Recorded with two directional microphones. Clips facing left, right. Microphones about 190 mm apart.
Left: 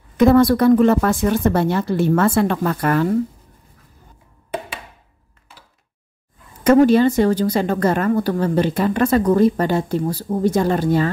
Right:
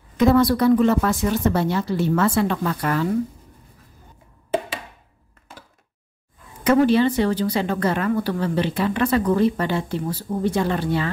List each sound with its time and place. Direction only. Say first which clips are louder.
0.2 s speech: left 4 dB; 50° left (ahead or behind)
6.6 s speech: left 4 dB; 45° left (ahead or behind)